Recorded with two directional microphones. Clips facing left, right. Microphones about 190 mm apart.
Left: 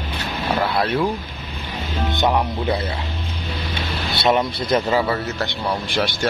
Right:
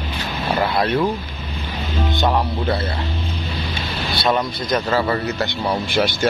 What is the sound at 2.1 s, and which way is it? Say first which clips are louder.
Speech: left 1 dB; 20° left (ahead or behind).